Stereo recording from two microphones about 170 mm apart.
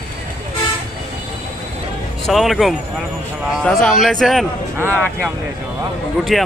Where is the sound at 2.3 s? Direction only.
Centre (ahead or behind).